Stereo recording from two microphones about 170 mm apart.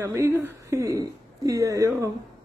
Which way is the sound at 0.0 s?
15° right (ahead or behind).